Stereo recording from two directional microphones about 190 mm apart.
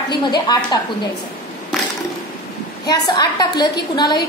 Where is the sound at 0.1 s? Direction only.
20° left (ahead or behind).